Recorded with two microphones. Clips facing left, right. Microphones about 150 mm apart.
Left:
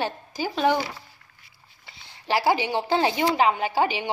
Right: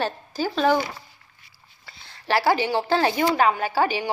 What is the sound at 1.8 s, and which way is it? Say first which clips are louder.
A woman's voice: right 2 dB; 15° left (ahead or behind).